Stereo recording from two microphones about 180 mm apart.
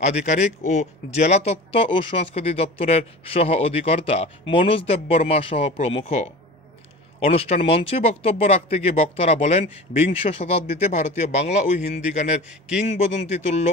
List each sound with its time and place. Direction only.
0.0 s speech: 40° left (ahead or behind)